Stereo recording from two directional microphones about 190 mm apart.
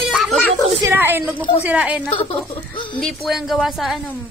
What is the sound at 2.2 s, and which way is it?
Speech, 25° left (ahead or behind).